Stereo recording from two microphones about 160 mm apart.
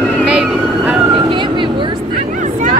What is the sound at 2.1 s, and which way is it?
Vehicle, 50° right (ahead or behind).